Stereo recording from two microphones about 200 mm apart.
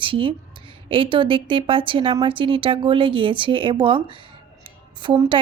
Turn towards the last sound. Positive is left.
turn(degrees=-25)  # may be behind; listen again after turning